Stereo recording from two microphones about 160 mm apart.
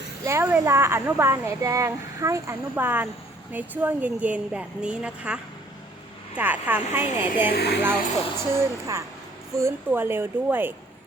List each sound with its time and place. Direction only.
0.3 s a woman's voice: 15° right (ahead or behind)
7.5 s speech: 90° left
8.5 s a woman's voice: 20° right (ahead or behind)